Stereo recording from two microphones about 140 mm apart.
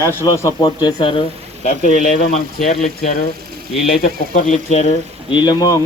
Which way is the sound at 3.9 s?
90° left.